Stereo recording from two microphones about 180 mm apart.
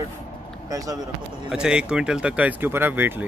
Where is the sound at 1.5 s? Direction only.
5° right (ahead or behind).